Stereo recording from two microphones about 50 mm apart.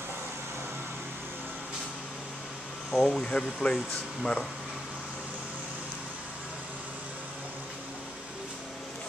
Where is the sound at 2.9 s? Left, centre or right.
Centre.